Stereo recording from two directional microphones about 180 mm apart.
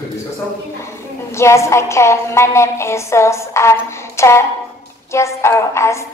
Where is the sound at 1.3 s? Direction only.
15° left (ahead or behind).